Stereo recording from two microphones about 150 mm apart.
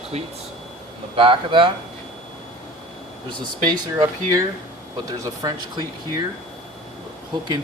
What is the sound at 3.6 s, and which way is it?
Speech, 25° right (ahead or behind).